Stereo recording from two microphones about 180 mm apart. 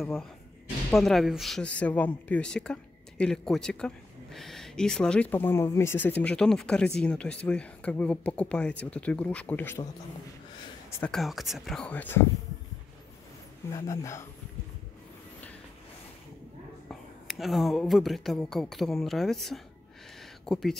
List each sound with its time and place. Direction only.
0.8 s speech: centre (ahead or behind)
11.0 s speech: 5° left (ahead or behind)
13.7 s speech: 15° left (ahead or behind)
16.9 s speech: centre (ahead or behind)
20.2 s a sound: centre (ahead or behind)